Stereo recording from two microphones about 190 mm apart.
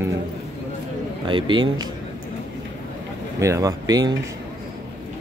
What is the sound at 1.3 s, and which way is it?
Speech, 25° right (ahead or behind).